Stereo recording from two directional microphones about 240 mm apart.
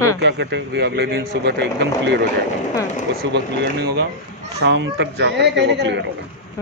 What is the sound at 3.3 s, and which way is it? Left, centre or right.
A man's voice, right.